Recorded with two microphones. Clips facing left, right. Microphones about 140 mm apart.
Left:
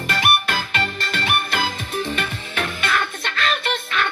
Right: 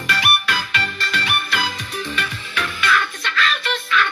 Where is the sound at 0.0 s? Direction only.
45° left (ahead or behind).